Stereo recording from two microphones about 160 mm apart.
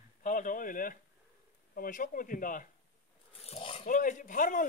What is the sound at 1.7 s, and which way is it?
Speech, 60° left (ahead or behind).